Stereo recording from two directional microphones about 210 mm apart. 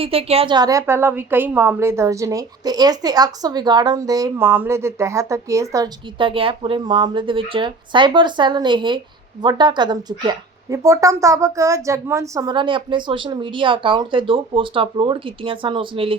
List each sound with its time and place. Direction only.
0.0 s a woman's voice: 25° right (ahead or behind)